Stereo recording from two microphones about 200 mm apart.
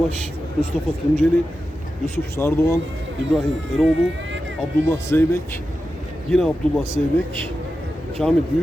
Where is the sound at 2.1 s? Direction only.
10° left (ahead or behind).